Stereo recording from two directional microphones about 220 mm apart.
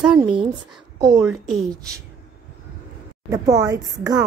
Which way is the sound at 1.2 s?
Centre (ahead or behind).